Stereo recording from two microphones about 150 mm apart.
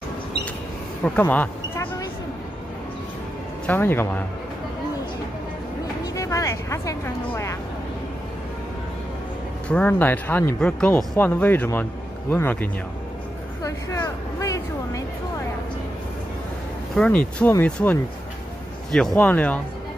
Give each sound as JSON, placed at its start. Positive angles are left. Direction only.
{"t": 1.0, "sound": "speech", "side_deg": 10}
{"t": 3.6, "sound": "speech", "side_deg": 15}
{"t": 6.1, "sound": "speech", "side_deg": 20}
{"t": 9.7, "sound": "speech", "side_deg": 10}
{"t": 13.6, "sound": "a sound", "side_deg": 20}
{"t": 16.9, "sound": "speech", "side_deg": 5}